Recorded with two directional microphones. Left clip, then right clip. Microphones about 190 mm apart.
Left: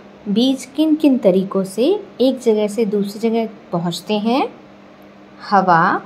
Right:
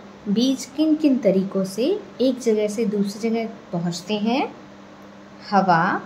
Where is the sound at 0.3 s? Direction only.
15° left (ahead or behind).